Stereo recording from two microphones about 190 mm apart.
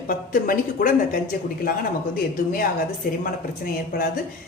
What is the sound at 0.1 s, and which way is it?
Speech, 50° left (ahead or behind).